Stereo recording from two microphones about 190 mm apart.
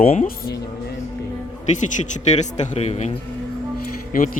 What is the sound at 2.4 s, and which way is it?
Speech, 40° left (ahead or behind).